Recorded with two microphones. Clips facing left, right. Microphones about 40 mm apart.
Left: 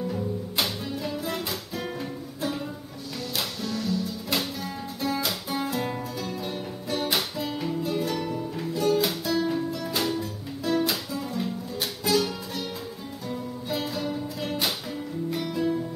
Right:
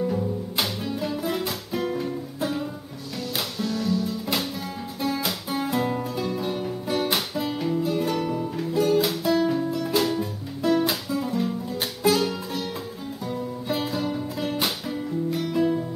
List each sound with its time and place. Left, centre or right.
0.1 s music: centre
12.0 s music: centre
13.7 s music: centre